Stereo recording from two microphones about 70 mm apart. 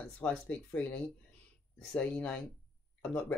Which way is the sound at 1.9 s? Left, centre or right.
Centre.